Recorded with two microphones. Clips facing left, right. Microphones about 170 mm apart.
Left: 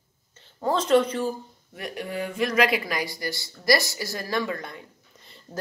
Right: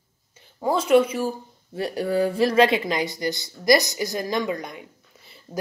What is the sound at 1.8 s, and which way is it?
Speech, 35° right (ahead or behind).